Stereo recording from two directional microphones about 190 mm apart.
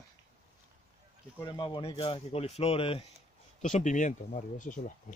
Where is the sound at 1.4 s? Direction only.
20° left (ahead or behind).